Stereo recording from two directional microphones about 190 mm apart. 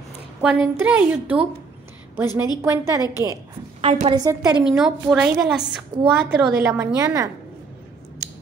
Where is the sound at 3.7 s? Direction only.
30° right (ahead or behind).